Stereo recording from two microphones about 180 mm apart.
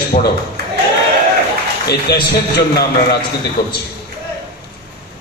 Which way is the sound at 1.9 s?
65° left (ahead or behind).